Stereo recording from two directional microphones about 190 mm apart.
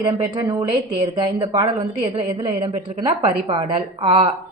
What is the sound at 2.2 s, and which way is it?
A woman's voice, 25° right (ahead or behind).